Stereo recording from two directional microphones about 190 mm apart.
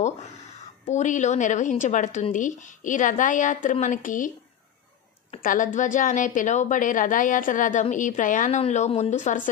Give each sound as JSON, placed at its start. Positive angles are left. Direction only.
{"t": 0.8, "sound": "a woman's voice", "side_deg": 40}
{"t": 5.4, "sound": "a woman's voice", "side_deg": 45}